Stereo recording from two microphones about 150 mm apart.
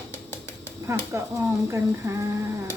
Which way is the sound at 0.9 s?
15° right (ahead or behind).